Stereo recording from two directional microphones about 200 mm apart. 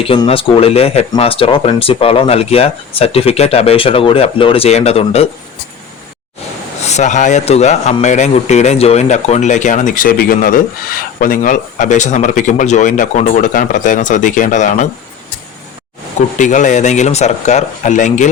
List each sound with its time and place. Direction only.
0.0 s speech: 25° left (ahead or behind)
6.8 s speech: 35° left (ahead or behind)
16.1 s speech: 40° left (ahead or behind)